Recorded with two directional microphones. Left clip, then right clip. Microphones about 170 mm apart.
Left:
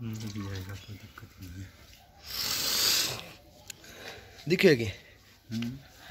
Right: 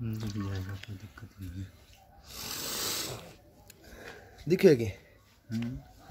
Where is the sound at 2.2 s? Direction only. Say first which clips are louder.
Left 8 dB; 5° right (ahead or behind).